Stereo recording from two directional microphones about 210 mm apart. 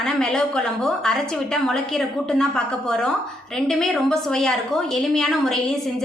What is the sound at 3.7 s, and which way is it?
A woman's voice, centre (ahead or behind).